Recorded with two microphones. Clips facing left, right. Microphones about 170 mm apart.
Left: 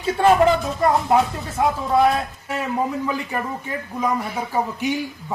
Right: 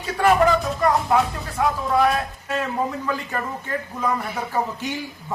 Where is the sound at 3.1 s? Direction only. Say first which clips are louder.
Left 1 dB; 10° left (ahead or behind).